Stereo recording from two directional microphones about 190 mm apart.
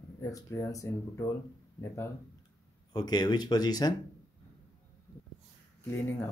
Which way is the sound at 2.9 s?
20° left (ahead or behind).